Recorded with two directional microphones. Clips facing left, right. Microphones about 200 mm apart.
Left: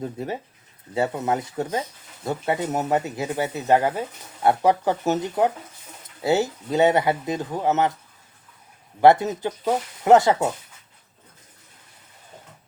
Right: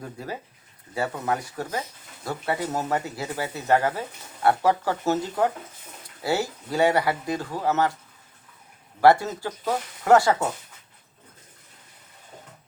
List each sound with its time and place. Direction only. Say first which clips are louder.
0.0 s speech: left 5 dB; 25° left (ahead or behind)
9.0 s speech: left 2 dB; 20° left (ahead or behind)